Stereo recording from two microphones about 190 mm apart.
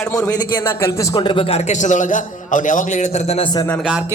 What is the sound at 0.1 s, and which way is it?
A man's voice, 5° left (ahead or behind).